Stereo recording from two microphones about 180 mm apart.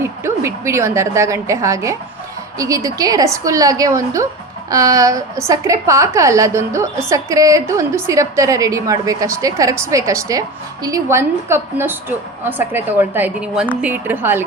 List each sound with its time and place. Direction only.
0.0 s a woman's voice: 15° right (ahead or behind)